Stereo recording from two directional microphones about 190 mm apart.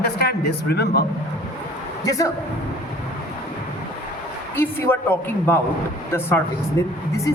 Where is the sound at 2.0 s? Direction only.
20° left (ahead or behind).